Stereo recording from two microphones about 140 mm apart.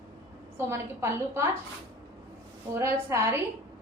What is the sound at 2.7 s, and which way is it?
Speech, 20° right (ahead or behind).